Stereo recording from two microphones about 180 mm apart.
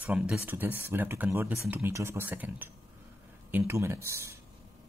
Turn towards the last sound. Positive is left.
turn(degrees=-15)  # may be behind; listen again after turning